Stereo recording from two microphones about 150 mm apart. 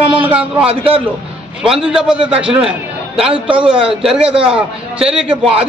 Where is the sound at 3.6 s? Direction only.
35° right (ahead or behind).